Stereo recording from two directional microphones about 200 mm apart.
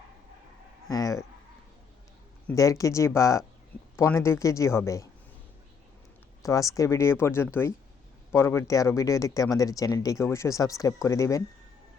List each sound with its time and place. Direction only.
0.9 s speech: 15° left (ahead or behind)
2.5 s speech: 15° left (ahead or behind)
6.4 s speech: 15° left (ahead or behind)